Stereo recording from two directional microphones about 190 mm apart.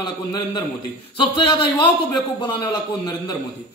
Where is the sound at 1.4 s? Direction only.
25° left (ahead or behind).